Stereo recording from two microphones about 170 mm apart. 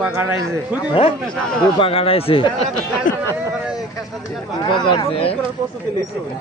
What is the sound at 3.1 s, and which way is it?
Speech, 55° left (ahead or behind).